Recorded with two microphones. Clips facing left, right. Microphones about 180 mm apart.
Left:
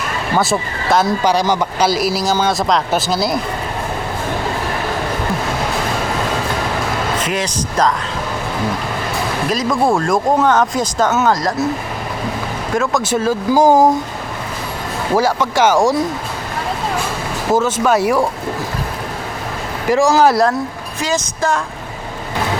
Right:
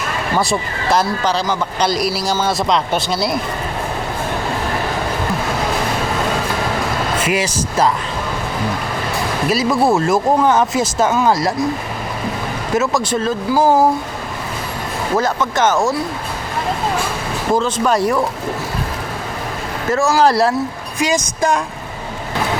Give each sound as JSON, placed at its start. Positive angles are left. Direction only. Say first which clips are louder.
{"t": 0.3, "sound": "speech", "louder": "left 2 dB", "side_deg": 0}
{"t": 1.2, "sound": "speech", "louder": "left 3 dB", "side_deg": 15}
{"t": 7.2, "sound": "speech", "louder": "right 2 dB", "side_deg": -10}
{"t": 9.5, "sound": "speech", "louder": "right 1 dB", "side_deg": -5}
{"t": 12.7, "sound": "speech", "louder": "right 1 dB", "side_deg": -5}
{"t": 13.0, "sound": "speech", "louder": "left 2 dB", "side_deg": 5}
{"t": 15.1, "sound": "speech", "louder": "left 3 dB", "side_deg": 10}
{"t": 17.5, "sound": "speech", "louder": "left 2 dB", "side_deg": 10}
{"t": 19.9, "sound": "speech", "louder": "left 3 dB", "side_deg": 15}
{"t": 20.2, "sound": "speech", "louder": "left 1 dB", "side_deg": 0}
{"t": 21.0, "sound": "speech", "louder": "right 2 dB", "side_deg": -15}